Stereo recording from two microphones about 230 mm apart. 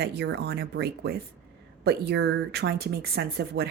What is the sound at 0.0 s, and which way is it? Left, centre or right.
Speech, right.